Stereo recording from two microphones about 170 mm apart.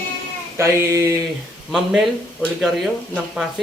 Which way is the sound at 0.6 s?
15° right (ahead or behind).